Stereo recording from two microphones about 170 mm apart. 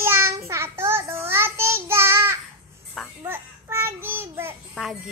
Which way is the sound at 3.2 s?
10° right (ahead or behind).